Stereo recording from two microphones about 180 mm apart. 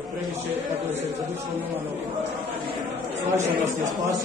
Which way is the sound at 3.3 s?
40° right (ahead or behind).